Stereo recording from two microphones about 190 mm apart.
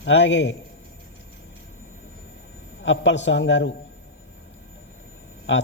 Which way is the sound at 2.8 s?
75° left (ahead or behind).